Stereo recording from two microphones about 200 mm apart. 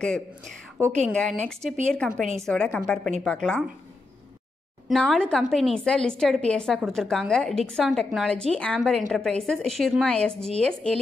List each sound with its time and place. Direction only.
1.1 s speech: 5° left (ahead or behind)
4.8 s speech: centre (ahead or behind)